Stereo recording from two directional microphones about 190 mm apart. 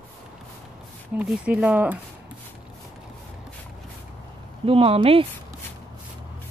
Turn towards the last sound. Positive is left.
turn(degrees=-30)  # may be behind; listen again after turning